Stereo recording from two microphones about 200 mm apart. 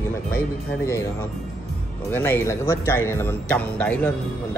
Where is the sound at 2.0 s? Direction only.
10° left (ahead or behind).